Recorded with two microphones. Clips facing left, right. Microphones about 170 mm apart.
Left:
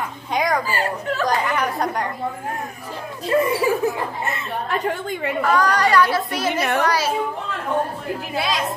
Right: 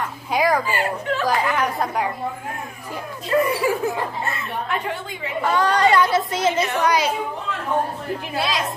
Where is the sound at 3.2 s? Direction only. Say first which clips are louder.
Left 1 dB; 25° left (ahead or behind).